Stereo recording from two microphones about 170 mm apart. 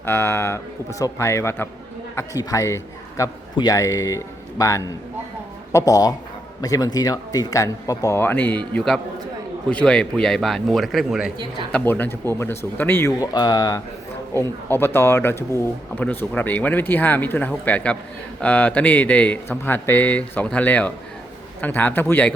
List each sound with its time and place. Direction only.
0.0 s a man's voice: 15° left (ahead or behind)
11.7 s speech: 10° left (ahead or behind)